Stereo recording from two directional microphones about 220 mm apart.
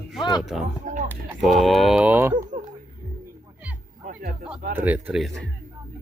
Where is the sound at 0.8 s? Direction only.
35° right (ahead or behind).